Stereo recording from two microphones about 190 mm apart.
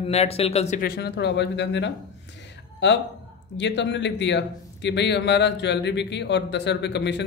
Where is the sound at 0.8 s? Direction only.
60° left (ahead or behind).